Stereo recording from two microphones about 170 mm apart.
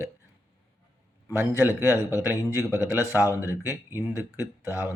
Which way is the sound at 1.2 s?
10° right (ahead or behind).